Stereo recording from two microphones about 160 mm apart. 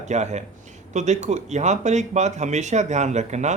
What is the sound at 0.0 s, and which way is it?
Speech, 45° right (ahead or behind).